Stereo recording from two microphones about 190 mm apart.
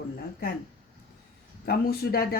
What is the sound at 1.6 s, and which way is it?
Speech, 55° left (ahead or behind).